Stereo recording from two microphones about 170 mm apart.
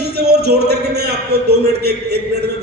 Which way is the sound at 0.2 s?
70° right (ahead or behind).